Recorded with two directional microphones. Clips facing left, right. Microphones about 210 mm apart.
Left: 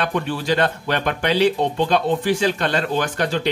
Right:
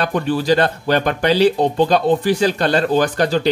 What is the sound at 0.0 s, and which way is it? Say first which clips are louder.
Speech: right 4 dB; 40° right (ahead or behind).